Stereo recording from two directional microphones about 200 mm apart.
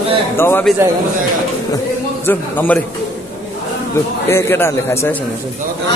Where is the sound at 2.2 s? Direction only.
10° left (ahead or behind).